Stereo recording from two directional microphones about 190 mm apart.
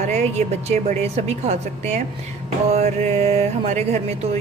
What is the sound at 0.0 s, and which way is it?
Speech, 35° right (ahead or behind).